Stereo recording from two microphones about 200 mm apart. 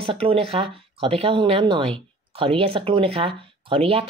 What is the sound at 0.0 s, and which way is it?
Speech, 25° right (ahead or behind).